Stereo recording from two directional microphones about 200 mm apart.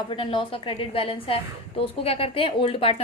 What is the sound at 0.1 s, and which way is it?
A woman's voice, 25° left (ahead or behind).